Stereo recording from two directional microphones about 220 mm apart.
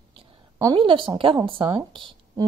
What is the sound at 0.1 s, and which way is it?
A woman's voice, 25° right (ahead or behind).